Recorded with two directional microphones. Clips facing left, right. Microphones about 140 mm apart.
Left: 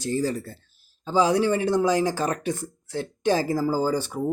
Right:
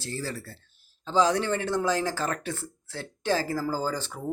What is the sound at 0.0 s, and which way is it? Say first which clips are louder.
Speech: left 9 dB; 15° left (ahead or behind).